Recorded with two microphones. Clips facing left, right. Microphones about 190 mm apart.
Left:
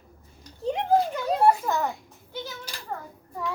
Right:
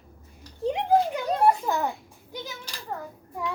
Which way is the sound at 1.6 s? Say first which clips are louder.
Even; 10° right (ahead or behind).